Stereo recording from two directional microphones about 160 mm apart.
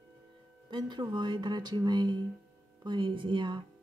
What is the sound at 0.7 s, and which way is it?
Speech, 30° right (ahead or behind).